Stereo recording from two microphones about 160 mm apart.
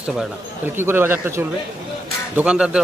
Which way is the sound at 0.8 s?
15° right (ahead or behind).